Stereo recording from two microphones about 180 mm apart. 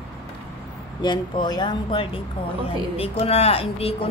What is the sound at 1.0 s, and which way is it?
A woman's voice, 25° left (ahead or behind).